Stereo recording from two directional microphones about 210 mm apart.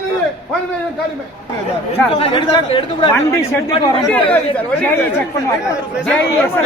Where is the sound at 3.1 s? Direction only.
15° left (ahead or behind).